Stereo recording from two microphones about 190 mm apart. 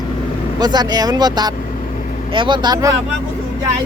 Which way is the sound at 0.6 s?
20° right (ahead or behind).